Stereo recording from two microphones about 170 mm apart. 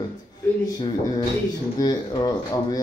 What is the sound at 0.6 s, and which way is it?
Speech, 25° left (ahead or behind).